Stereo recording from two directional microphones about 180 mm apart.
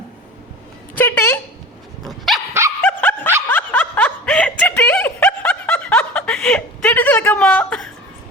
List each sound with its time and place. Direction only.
0.9 s a sound: 10° left (ahead or behind)
2.0 s dog: centre (ahead or behind)
2.5 s dog: 15° right (ahead or behind)
2.8 s snicker: 10° left (ahead or behind)